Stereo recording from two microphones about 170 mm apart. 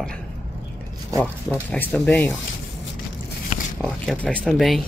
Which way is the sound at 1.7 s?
10° left (ahead or behind).